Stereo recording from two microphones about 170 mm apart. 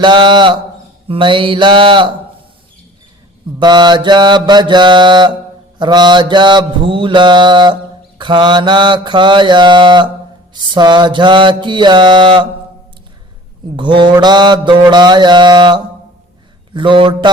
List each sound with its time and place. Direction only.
0.0 s mantra: 30° right (ahead or behind)
3.6 s mantra: 25° right (ahead or behind)
13.7 s mantra: 25° right (ahead or behind)